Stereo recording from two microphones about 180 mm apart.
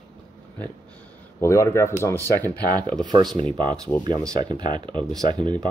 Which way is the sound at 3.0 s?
25° right (ahead or behind).